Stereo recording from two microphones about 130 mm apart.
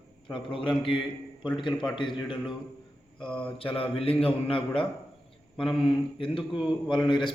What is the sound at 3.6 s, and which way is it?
A man's voice, 45° left (ahead or behind).